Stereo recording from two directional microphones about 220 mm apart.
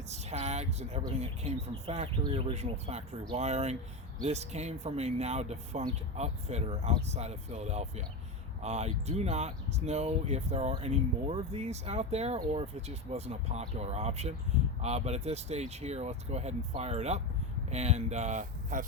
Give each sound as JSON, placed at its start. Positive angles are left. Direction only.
{"t": 0.1, "sound": "speech", "side_deg": -30}